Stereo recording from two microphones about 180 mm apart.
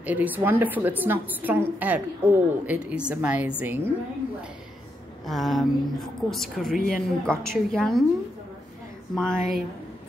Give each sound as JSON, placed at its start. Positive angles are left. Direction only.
{"t": 0.0, "sound": "a woman's voice", "side_deg": -10}
{"t": 5.2, "sound": "a woman's voice", "side_deg": 0}
{"t": 9.1, "sound": "a woman's voice", "side_deg": 5}